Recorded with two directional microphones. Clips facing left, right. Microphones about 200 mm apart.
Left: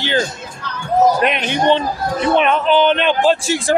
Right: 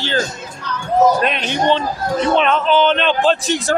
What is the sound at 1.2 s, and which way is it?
Speech, 15° left (ahead or behind).